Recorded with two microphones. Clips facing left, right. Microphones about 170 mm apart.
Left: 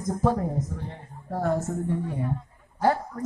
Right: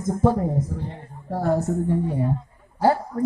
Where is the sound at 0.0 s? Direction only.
25° right (ahead or behind).